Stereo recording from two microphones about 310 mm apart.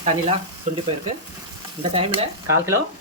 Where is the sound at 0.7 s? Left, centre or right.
Right.